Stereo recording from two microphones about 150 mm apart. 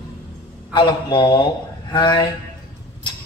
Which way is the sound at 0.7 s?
30° left (ahead or behind).